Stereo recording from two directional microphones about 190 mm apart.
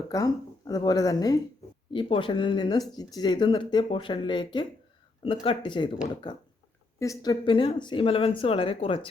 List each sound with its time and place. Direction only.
0.1 s speech: 15° left (ahead or behind)
7.0 s speech: 20° left (ahead or behind)